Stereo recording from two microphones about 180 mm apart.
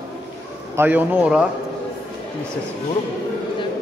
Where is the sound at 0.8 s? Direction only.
10° right (ahead or behind).